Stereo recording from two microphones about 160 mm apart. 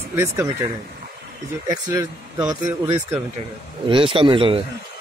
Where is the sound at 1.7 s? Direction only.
20° right (ahead or behind).